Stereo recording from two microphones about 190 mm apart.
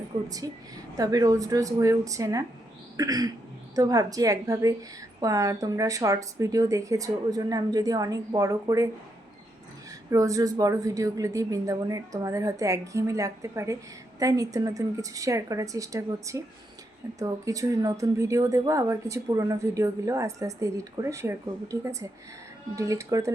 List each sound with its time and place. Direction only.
0.3 s a woman's voice: 20° right (ahead or behind)
10.1 s speech: 15° right (ahead or behind)